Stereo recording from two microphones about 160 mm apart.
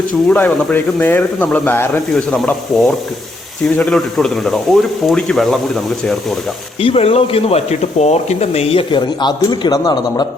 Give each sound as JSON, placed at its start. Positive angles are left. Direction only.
{"t": 0.3, "sound": "speech", "side_deg": 10}
{"t": 6.8, "sound": "speech", "side_deg": 35}